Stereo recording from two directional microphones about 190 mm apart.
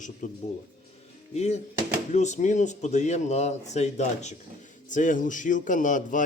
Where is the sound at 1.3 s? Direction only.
35° left (ahead or behind).